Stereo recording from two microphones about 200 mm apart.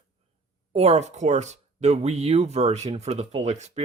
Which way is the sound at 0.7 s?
30° right (ahead or behind).